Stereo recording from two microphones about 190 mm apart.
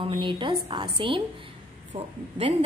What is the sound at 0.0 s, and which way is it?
A woman's voice, 25° right (ahead or behind).